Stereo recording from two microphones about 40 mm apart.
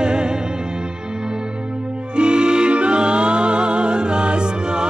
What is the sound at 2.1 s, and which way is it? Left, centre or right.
Music, right.